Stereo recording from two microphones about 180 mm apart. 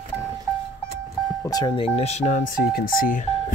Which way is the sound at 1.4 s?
20° left (ahead or behind).